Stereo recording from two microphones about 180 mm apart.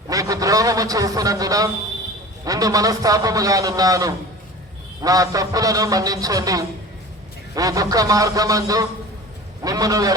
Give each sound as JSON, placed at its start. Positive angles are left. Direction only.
{"t": 0.1, "sound": "a man's voice", "side_deg": -20}